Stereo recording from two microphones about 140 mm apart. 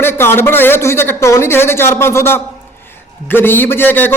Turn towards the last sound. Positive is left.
turn(degrees=15)  # may be behind; listen again after turning